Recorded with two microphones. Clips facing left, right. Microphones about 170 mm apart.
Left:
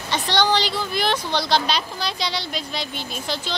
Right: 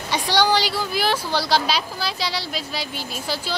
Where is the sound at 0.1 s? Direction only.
10° right (ahead or behind).